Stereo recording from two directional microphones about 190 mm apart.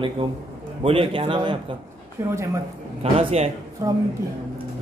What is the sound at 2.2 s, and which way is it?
Speech, 15° right (ahead or behind).